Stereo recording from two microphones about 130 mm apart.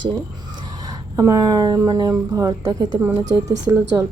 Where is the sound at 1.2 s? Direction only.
25° right (ahead or behind).